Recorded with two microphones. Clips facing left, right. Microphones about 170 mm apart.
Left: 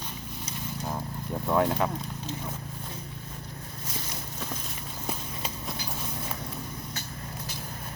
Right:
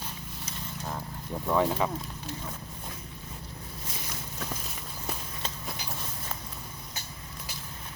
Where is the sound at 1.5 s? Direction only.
Centre (ahead or behind).